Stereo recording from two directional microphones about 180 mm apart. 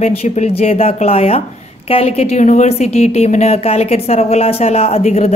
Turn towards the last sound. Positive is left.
turn(degrees=35)  # may be behind; listen again after turning